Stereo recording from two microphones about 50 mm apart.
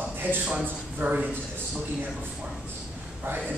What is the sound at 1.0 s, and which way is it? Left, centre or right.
Speech, right.